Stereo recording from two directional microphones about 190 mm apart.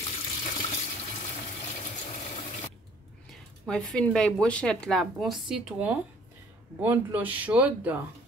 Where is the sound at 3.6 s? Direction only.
5° left (ahead or behind).